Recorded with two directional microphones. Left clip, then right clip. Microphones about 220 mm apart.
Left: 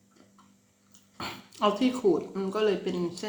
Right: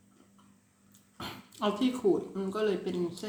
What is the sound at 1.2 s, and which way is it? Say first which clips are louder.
Speech: left 6 dB; 15° right (ahead or behind).